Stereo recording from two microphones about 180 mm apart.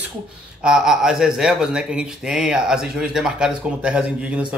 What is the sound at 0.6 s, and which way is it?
Speech, 5° right (ahead or behind).